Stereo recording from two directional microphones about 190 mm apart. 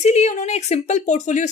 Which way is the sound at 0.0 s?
40° left (ahead or behind).